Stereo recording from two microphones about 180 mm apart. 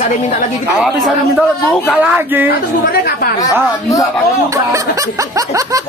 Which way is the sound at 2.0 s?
10° right (ahead or behind).